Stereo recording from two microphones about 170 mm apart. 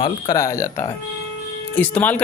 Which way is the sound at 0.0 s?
20° left (ahead or behind).